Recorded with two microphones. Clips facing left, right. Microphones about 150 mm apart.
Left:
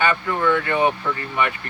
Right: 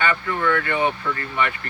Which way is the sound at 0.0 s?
15° left (ahead or behind).